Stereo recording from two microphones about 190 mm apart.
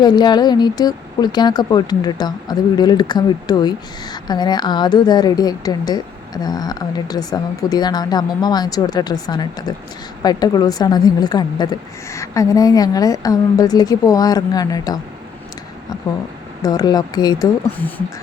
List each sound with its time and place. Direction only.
0.0 s speech: 20° left (ahead or behind)
16.6 s speech: 20° left (ahead or behind)